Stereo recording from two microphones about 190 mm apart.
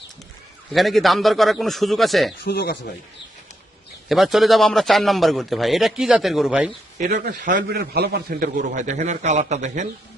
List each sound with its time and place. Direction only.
0.7 s a man's voice: centre (ahead or behind)
2.4 s speech: 60° left (ahead or behind)
4.1 s a man's voice: centre (ahead or behind)
7.0 s a man's voice: 40° right (ahead or behind)